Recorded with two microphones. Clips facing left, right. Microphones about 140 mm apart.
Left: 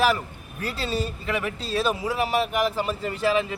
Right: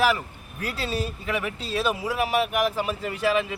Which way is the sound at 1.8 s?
10° right (ahead or behind).